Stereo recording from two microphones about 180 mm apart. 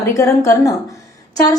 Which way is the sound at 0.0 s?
15° left (ahead or behind).